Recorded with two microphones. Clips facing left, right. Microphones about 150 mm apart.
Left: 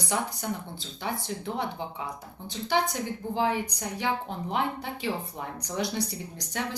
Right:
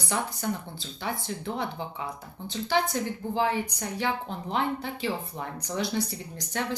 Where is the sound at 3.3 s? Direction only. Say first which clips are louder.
Even; 15° left (ahead or behind).